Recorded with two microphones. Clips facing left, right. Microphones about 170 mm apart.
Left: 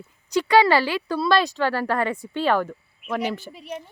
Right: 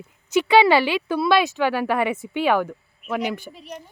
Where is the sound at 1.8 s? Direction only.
5° right (ahead or behind).